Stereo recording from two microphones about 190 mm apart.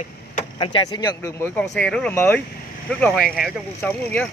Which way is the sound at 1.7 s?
5° left (ahead or behind).